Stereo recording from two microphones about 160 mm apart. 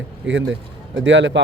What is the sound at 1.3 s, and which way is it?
Speech, 90° right.